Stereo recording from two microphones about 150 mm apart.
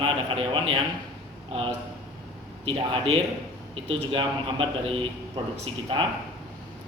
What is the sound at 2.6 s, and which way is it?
A man's voice, 35° right (ahead or behind).